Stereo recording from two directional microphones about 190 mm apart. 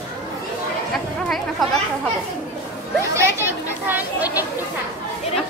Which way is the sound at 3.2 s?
10° right (ahead or behind).